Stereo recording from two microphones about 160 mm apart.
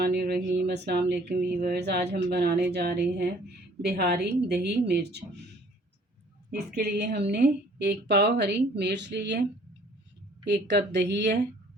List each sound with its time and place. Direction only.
0.0 s speech: 80° right
3.8 s speech: 80° right
6.7 s speech: 90° right
10.4 s speech: 90° right